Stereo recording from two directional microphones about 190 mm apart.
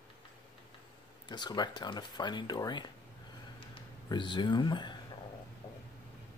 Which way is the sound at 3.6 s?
25° left (ahead or behind).